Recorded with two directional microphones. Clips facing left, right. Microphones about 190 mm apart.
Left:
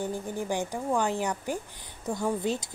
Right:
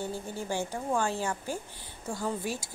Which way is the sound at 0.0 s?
15° left (ahead or behind).